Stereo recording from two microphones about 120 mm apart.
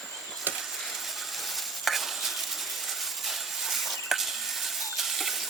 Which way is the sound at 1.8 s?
Centre (ahead or behind).